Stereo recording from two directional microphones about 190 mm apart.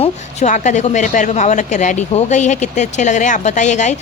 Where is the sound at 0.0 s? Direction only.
40° left (ahead or behind).